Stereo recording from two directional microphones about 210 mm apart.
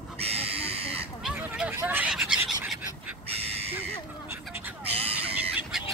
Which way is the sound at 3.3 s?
30° right (ahead or behind).